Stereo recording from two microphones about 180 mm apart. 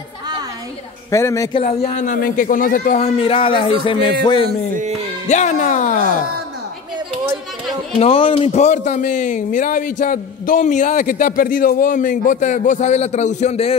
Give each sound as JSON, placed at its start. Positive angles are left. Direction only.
{"t": 1.1, "sound": "a man's voice", "side_deg": 15}
{"t": 1.5, "sound": "speech", "side_deg": 35}
{"t": 2.1, "sound": "a man's voice", "side_deg": 50}
{"t": 3.0, "sound": "music", "side_deg": 35}
{"t": 5.3, "sound": "a man's voice", "side_deg": 40}
{"t": 8.0, "sound": "a man's voice", "side_deg": 30}